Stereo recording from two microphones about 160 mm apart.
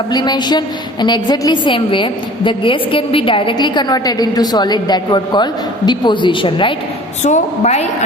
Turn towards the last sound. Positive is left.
turn(degrees=45)  # may be behind; listen again after turning